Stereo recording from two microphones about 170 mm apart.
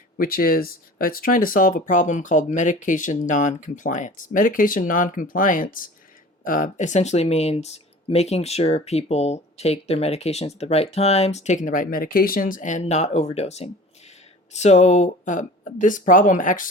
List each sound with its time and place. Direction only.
0.2 s speech: 60° left (ahead or behind)